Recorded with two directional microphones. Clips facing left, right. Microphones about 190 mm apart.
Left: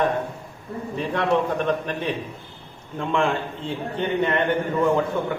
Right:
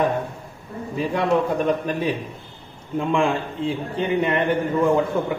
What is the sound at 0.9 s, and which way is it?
A man's voice, 5° right (ahead or behind).